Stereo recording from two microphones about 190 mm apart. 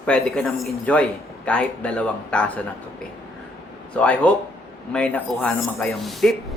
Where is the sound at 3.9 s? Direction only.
5° left (ahead or behind).